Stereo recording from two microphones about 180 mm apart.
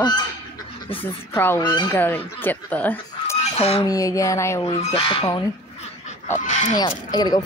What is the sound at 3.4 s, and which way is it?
Fowl, 35° left (ahead or behind).